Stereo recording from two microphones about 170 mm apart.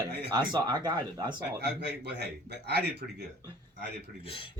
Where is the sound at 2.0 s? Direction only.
80° right.